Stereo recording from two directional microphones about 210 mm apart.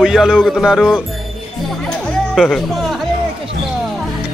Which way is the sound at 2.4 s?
Centre (ahead or behind).